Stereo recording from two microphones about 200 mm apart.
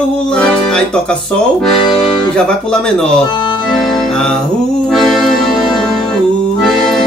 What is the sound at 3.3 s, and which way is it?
Accordion, 20° left (ahead or behind).